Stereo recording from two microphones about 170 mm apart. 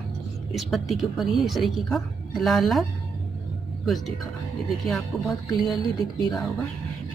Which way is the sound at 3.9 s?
Centre (ahead or behind).